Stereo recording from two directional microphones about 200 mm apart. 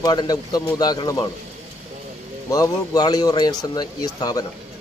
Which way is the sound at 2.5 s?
20° left (ahead or behind).